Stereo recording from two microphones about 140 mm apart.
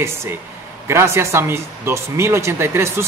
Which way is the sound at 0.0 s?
20° right (ahead or behind).